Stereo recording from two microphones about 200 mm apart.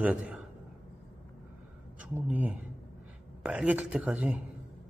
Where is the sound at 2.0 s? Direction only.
5° right (ahead or behind).